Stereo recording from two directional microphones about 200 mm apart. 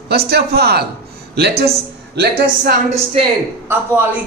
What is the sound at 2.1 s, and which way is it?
Speech, 55° right (ahead or behind).